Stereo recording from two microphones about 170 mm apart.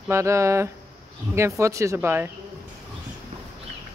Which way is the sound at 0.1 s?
15° right (ahead or behind).